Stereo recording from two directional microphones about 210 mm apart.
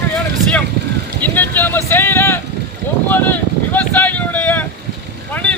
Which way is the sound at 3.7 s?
10° left (ahead or behind).